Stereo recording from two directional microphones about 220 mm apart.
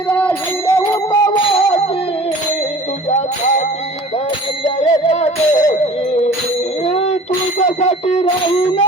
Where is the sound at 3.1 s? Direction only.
30° left (ahead or behind).